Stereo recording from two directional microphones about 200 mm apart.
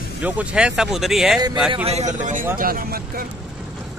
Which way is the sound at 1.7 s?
30° right (ahead or behind).